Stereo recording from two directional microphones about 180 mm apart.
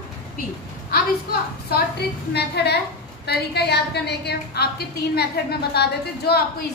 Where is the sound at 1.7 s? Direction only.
65° left (ahead or behind).